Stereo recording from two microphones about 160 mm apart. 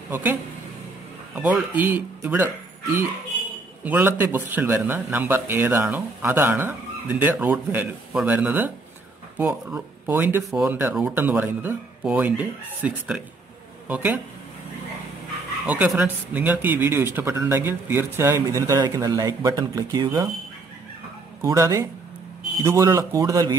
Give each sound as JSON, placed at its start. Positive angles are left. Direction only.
{"t": 0.1, "sound": "speech", "side_deg": -10}
{"t": 15.6, "sound": "speech", "side_deg": -10}
{"t": 21.4, "sound": "speech", "side_deg": -20}